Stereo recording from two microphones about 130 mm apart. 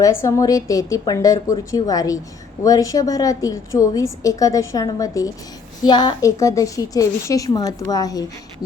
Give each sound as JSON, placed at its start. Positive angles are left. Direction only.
{"t": 0.0, "sound": "a woman's voice", "side_deg": 20}